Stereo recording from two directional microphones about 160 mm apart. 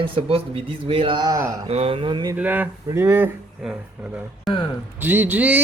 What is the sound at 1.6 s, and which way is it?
Speech, 40° right (ahead or behind).